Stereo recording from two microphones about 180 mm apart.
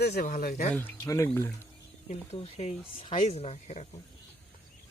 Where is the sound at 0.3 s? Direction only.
50° left (ahead or behind).